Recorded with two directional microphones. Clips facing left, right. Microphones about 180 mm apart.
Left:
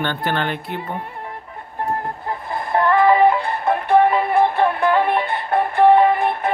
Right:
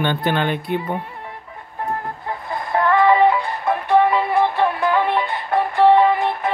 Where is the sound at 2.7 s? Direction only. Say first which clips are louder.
Even; 40° left (ahead or behind).